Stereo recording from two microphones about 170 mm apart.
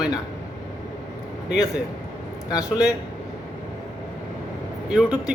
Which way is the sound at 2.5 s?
20° left (ahead or behind).